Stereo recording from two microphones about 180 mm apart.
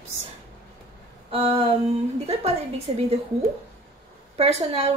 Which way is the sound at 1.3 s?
35° right (ahead or behind).